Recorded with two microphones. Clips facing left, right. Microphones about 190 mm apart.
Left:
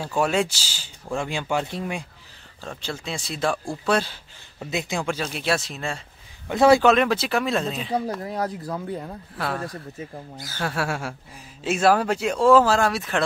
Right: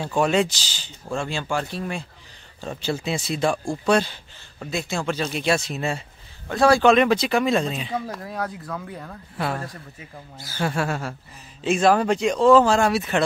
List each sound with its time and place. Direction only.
0.0 s speech: 5° left (ahead or behind)
2.8 s speech: 5° right (ahead or behind)
4.6 s speech: 20° left (ahead or behind)
5.2 s speech: centre (ahead or behind)
6.5 s speech: 20° left (ahead or behind)
6.8 s speech: centre (ahead or behind)
8.2 s speech: 25° left (ahead or behind)
9.4 s speech: centre (ahead or behind)